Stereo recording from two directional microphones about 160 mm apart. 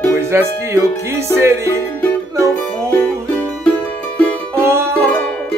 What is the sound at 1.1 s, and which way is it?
Music, 15° right (ahead or behind).